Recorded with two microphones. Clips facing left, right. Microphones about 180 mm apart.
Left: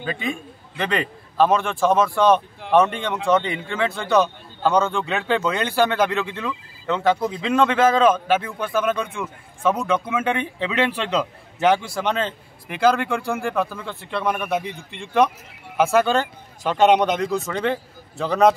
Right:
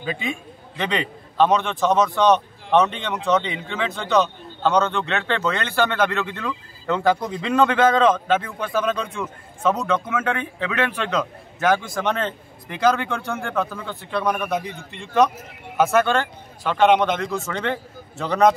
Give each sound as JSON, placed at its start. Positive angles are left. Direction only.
{"t": 0.0, "sound": "a man's voice", "side_deg": -5}
{"t": 12.6, "sound": "a man's voice", "side_deg": 5}
{"t": 17.5, "sound": "speech", "side_deg": 5}